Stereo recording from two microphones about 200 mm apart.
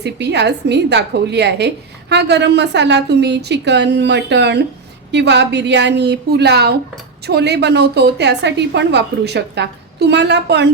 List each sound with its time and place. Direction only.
0.0 s a woman's voice: 60° right (ahead or behind)